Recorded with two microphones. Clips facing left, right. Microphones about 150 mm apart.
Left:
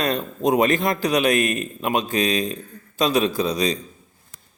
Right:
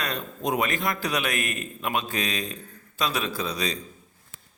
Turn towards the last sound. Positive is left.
turn(degrees=20)  # may be behind; listen again after turning